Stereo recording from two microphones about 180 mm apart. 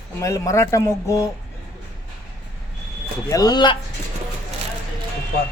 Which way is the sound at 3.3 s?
20° left (ahead or behind).